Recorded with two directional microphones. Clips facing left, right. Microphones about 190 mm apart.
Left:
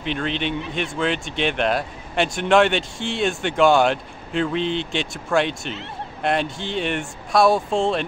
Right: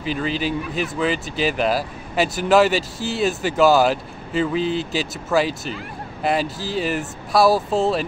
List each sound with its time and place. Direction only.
0.0 s speech: 5° right (ahead or behind)